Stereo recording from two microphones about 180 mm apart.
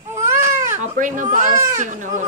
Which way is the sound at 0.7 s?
45° right (ahead or behind).